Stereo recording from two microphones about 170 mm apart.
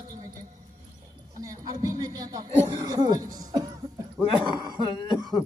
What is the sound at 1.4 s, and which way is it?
A man's voice, 20° right (ahead or behind).